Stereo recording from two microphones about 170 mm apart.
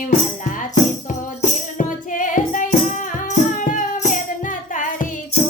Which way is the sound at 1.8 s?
50° left (ahead or behind).